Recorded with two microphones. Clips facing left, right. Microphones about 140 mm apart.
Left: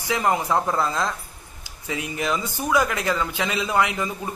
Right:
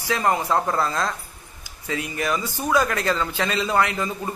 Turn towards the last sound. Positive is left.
turn(degrees=15)  # may be behind; listen again after turning